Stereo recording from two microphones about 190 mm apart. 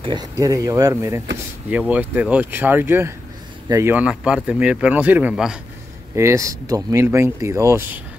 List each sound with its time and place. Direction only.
0.0 s speech: 20° right (ahead or behind); by 5.6 s 5° right (ahead or behind)
6.1 s speech: 15° right (ahead or behind)